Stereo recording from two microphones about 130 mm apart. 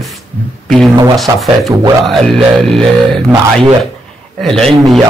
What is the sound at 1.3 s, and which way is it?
Speech, 25° right (ahead or behind).